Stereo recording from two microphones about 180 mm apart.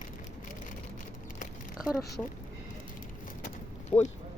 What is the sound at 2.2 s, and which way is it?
Speech, 5° left (ahead or behind).